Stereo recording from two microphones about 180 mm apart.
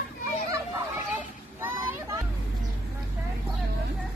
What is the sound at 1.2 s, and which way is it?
Children playing, 10° right (ahead or behind).